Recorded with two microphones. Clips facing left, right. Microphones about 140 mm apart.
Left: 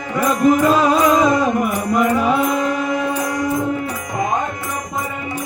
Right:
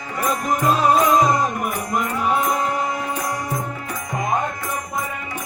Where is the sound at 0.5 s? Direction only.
90° left.